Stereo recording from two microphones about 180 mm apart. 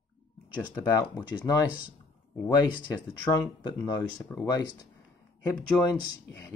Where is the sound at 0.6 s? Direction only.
15° left (ahead or behind).